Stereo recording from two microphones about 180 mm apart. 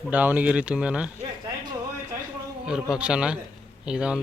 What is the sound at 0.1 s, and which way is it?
Speech, 10° right (ahead or behind).